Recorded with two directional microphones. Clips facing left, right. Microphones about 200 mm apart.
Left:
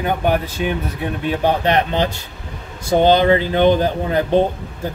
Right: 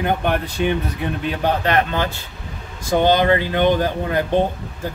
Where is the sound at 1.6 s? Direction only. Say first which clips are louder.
Left 2 dB; 20° left (ahead or behind).